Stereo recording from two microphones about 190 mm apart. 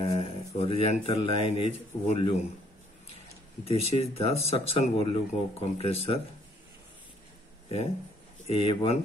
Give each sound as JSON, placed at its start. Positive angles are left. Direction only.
{"t": 0.0, "sound": "speech", "side_deg": 30}
{"t": 3.6, "sound": "speech", "side_deg": 30}
{"t": 8.5, "sound": "speech", "side_deg": 30}